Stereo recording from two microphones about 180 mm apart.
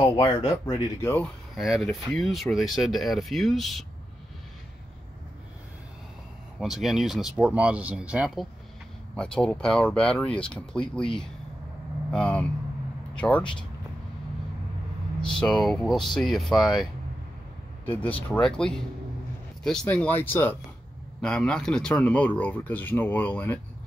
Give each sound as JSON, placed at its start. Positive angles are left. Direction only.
{"t": 0.0, "sound": "speech", "side_deg": 25}
{"t": 1.1, "sound": "speech", "side_deg": 0}
{"t": 6.6, "sound": "speech", "side_deg": 0}
{"t": 9.1, "sound": "speech", "side_deg": 5}
{"t": 12.1, "sound": "speech", "side_deg": 5}
{"t": 15.3, "sound": "speech", "side_deg": 5}
{"t": 17.8, "sound": "speech", "side_deg": 10}